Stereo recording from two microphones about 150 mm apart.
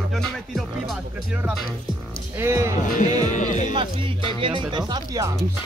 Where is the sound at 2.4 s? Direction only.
20° right (ahead or behind).